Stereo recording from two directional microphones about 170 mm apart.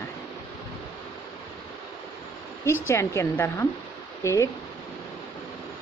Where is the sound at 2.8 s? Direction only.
15° left (ahead or behind).